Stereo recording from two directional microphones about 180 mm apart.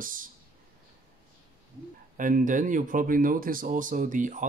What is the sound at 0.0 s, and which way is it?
Speech, 50° right (ahead or behind).